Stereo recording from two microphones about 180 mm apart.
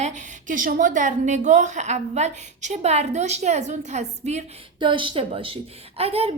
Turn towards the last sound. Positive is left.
turn(degrees=-35)  # may be behind; listen again after turning